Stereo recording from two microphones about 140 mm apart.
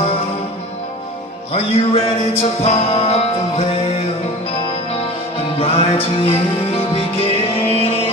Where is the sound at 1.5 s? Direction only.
45° left (ahead or behind).